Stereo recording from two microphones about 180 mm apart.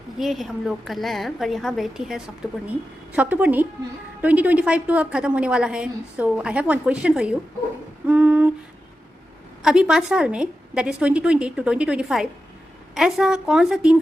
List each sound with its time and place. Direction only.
0.2 s a woman's voice: centre (ahead or behind)
8.0 s humming: 10° right (ahead or behind)
9.6 s a woman's voice: 5° right (ahead or behind)